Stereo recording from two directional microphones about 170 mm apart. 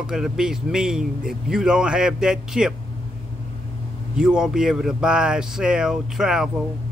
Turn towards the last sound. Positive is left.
turn(degrees=-5)  # may be behind; listen again after turning